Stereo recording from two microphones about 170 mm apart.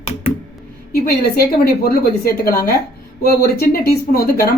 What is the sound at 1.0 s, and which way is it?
Speech, 65° left (ahead or behind).